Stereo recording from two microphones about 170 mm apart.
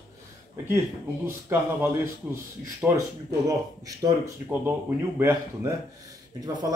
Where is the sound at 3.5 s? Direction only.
20° right (ahead or behind).